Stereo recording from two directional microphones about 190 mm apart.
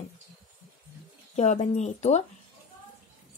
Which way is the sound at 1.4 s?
40° left (ahead or behind).